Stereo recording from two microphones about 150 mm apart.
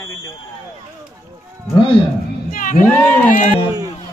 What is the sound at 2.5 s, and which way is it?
Crowd, 65° left (ahead or behind).